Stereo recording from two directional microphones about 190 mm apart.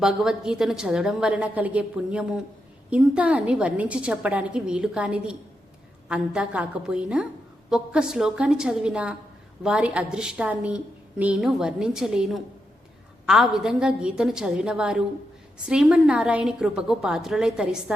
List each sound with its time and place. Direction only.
0.0 s a woman's voice: 5° right (ahead or behind)